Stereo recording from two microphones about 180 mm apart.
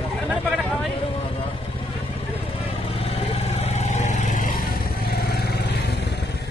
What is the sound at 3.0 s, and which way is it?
Vehicle, 35° left (ahead or behind).